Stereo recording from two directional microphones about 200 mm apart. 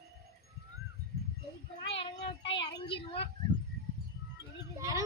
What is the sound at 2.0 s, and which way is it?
Child singing, 30° left (ahead or behind).